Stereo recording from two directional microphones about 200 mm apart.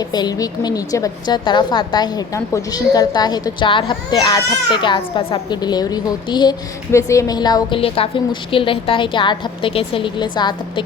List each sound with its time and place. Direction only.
0.0 s a woman's voice: 20° left (ahead or behind)